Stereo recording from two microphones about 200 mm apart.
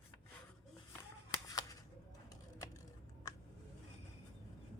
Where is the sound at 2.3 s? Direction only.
15° left (ahead or behind).